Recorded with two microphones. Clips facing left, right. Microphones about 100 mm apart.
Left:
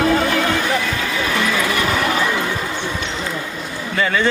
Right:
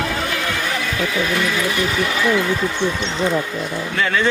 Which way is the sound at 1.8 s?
55° left (ahead or behind).